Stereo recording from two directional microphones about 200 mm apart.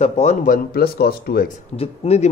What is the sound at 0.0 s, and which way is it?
Speech, 35° left (ahead or behind).